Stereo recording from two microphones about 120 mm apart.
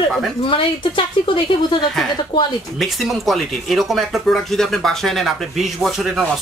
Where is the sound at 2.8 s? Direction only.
Centre (ahead or behind).